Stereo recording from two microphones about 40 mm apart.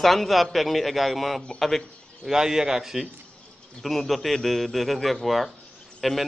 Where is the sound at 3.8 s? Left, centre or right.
Centre.